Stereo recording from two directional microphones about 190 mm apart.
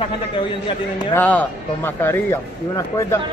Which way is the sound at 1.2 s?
10° left (ahead or behind).